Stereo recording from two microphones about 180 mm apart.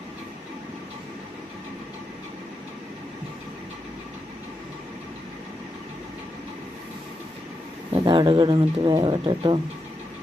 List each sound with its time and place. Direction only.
7.9 s speech: 25° right (ahead or behind)